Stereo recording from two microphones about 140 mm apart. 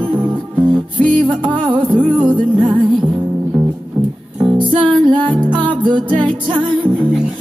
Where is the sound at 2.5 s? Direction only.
35° right (ahead or behind).